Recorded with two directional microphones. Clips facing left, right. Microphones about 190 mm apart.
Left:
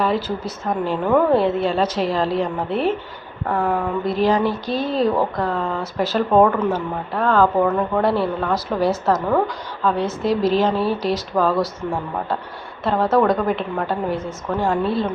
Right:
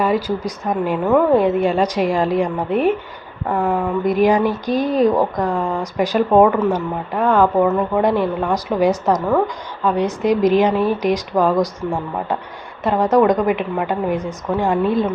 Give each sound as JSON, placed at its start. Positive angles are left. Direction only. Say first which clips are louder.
{"t": 0.0, "sound": "speech", "louder": "right 3 dB", "side_deg": -10}
{"t": 9.1, "sound": "speech", "louder": "right 2 dB", "side_deg": -5}
{"t": 9.8, "sound": "speech", "louder": "right 3 dB", "side_deg": -15}
{"t": 12.8, "sound": "speech", "louder": "right 3 dB", "side_deg": -15}